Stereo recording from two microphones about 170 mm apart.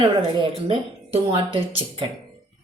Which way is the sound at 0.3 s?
30° right (ahead or behind).